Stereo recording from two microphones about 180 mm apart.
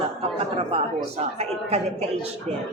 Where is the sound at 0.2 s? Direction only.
35° right (ahead or behind).